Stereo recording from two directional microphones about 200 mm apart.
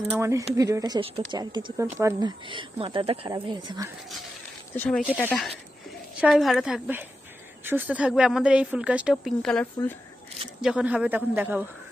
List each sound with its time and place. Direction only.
0.1 s a man's voice: 15° right (ahead or behind)
4.7 s speech: 5° left (ahead or behind)
6.1 s a man's voice: 5° right (ahead or behind)